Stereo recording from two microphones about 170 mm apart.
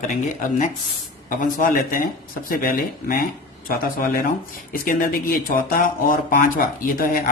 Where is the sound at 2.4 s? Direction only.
55° left (ahead or behind).